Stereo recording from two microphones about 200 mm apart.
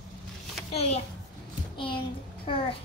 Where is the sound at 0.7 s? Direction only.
30° left (ahead or behind).